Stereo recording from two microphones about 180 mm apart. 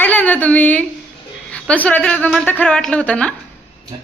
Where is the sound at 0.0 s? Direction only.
10° left (ahead or behind).